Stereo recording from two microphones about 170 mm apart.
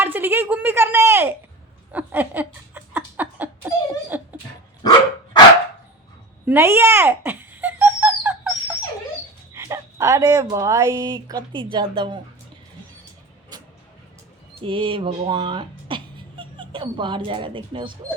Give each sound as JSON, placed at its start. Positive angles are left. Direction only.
{"t": 0.0, "sound": "a sound", "side_deg": -10}
{"t": 4.8, "sound": "dog", "side_deg": 25}
{"t": 6.4, "sound": "owl", "side_deg": -15}
{"t": 9.5, "sound": "a sound", "side_deg": -15}
{"t": 10.5, "sound": "a woman's voice", "side_deg": -20}
{"t": 13.5, "sound": "music", "side_deg": -25}
{"t": 14.6, "sound": "speech", "side_deg": -30}